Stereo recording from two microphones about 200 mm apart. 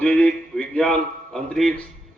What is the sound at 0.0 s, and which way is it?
A man's voice, 5° left (ahead or behind).